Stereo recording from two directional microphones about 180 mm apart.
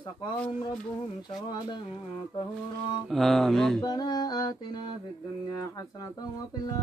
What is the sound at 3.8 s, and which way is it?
Humming, 20° left (ahead or behind).